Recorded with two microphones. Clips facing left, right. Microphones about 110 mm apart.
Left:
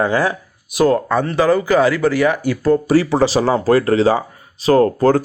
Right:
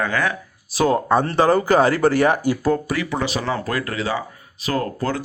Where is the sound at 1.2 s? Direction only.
30° right (ahead or behind).